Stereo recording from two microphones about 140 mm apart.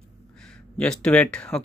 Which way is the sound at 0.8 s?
5° left (ahead or behind).